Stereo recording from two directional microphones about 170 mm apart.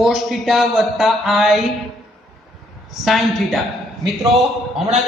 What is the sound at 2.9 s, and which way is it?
A man's voice, centre (ahead or behind).